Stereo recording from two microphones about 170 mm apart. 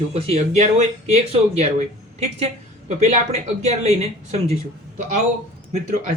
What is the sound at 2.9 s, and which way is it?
A man's voice, 40° right (ahead or behind).